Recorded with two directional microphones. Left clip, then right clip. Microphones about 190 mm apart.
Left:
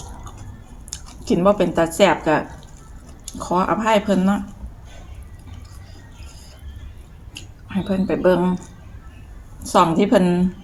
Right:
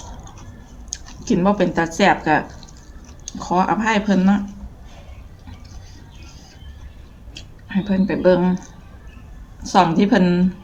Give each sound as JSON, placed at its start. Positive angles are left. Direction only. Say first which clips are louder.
{"t": 1.0, "sound": "speech", "louder": "left 2 dB", "side_deg": -15}
{"t": 7.3, "sound": "speech", "louder": "right 2 dB", "side_deg": -15}
{"t": 9.6, "sound": "speech", "louder": "even", "side_deg": -15}